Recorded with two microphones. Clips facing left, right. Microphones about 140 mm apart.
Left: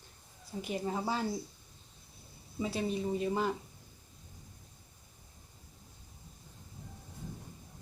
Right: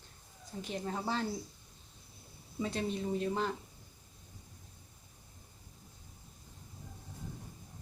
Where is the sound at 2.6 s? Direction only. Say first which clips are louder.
Left 2 dB; 5° left (ahead or behind).